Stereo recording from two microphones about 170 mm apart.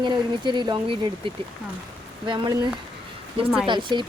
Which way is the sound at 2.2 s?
30° right (ahead or behind).